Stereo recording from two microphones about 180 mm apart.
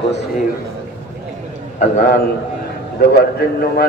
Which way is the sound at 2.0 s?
50° left (ahead or behind).